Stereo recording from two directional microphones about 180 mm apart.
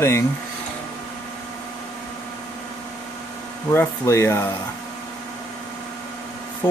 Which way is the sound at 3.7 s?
15° left (ahead or behind).